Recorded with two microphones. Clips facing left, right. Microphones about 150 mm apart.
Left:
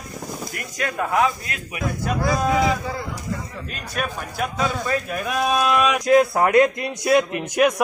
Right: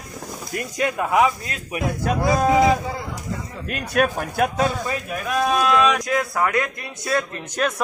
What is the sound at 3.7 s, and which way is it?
Speech, 60° right (ahead or behind).